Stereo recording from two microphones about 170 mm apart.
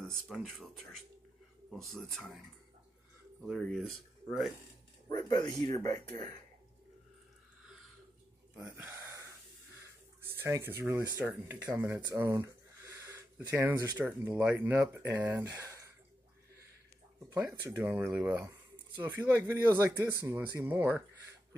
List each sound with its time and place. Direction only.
0.1 s speech: centre (ahead or behind)
3.4 s speech: centre (ahead or behind)
5.8 s speech: 20° left (ahead or behind)
8.5 s a sound: 15° right (ahead or behind)
10.2 s speech: 15° right (ahead or behind)
17.3 s speech: 15° right (ahead or behind)